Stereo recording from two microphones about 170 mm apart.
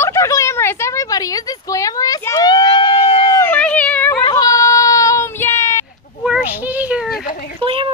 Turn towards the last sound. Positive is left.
turn(degrees=-30)  # may be behind; listen again after turning